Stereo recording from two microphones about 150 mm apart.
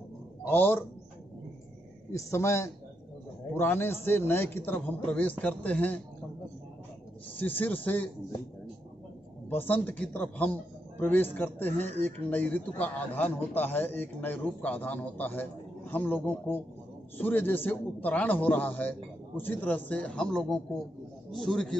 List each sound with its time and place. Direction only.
0.5 s a man's voice: 15° left (ahead or behind)
2.1 s a man's voice: 20° left (ahead or behind)
7.3 s a man's voice: 10° left (ahead or behind)
9.5 s a man's voice: 10° left (ahead or behind)